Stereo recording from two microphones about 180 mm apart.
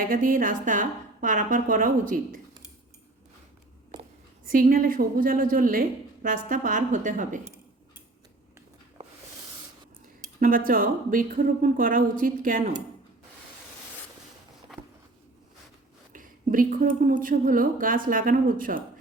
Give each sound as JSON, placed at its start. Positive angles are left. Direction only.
{"t": 0.0, "sound": "a woman's voice", "side_deg": -50}
{"t": 4.4, "sound": "a woman's voice", "side_deg": -50}
{"t": 10.4, "sound": "a woman's voice", "side_deg": -50}
{"t": 16.1, "sound": "a woman's voice", "side_deg": -50}